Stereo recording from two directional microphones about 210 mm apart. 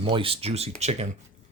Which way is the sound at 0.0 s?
25° right (ahead or behind).